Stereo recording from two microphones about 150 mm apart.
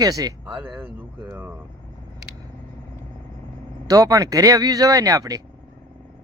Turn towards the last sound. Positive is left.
turn(degrees=-25)  # may be behind; listen again after turning